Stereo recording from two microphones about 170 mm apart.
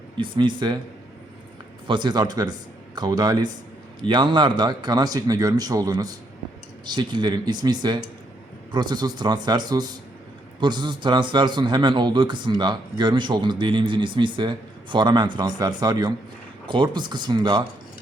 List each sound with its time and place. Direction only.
0.2 s a man's voice: 25° right (ahead or behind)
1.9 s a man's voice: 25° right (ahead or behind)